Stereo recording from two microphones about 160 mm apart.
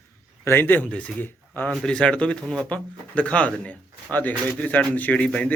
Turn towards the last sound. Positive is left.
turn(degrees=5)  # may be behind; listen again after turning